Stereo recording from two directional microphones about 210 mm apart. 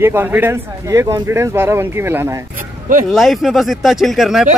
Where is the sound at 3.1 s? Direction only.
Centre (ahead or behind).